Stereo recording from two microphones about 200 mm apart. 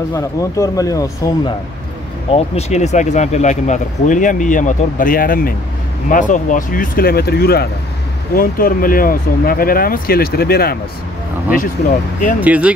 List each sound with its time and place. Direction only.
0.1 s speech: 15° left (ahead or behind)
2.3 s speech: 30° left (ahead or behind); by 10.8 s 50° left (ahead or behind)
12.4 s speech: 5° right (ahead or behind)